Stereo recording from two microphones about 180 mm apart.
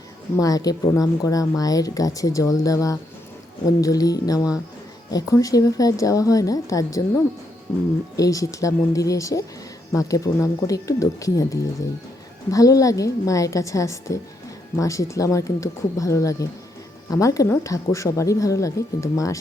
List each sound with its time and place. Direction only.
0.3 s speech: 20° left (ahead or behind)
8.1 s speech: 20° left (ahead or behind)
12.5 s speech: 20° left (ahead or behind)